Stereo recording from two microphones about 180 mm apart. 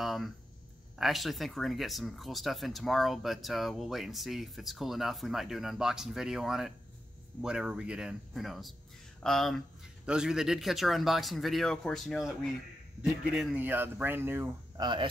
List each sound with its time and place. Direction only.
0.0 s a sound: centre (ahead or behind)
0.9 s speech: centre (ahead or behind)
14.8 s speech: 25° right (ahead or behind)